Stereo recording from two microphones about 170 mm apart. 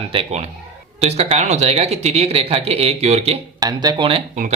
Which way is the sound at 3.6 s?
25° right (ahead or behind).